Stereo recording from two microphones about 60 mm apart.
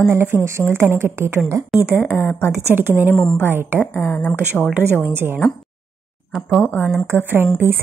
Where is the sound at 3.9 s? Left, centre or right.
Left.